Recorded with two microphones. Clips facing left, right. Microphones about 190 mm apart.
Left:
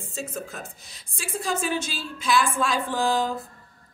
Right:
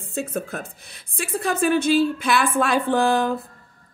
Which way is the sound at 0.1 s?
60° right (ahead or behind).